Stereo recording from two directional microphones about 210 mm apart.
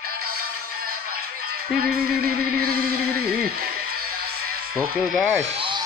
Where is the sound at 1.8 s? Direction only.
45° right (ahead or behind).